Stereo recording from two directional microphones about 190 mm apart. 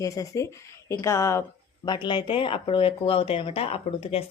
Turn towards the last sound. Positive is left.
turn(degrees=30)  # may be behind; listen again after turning